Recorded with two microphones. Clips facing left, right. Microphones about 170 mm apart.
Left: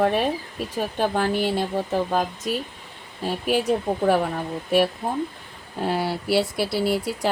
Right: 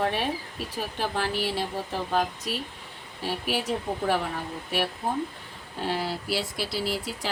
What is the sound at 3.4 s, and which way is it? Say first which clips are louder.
Speech: left 8 dB; 50° left (ahead or behind).